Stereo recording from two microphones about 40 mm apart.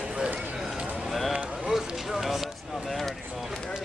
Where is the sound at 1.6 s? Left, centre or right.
Centre.